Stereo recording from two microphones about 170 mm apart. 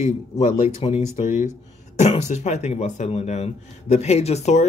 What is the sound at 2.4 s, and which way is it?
A man's voice, 40° left (ahead or behind).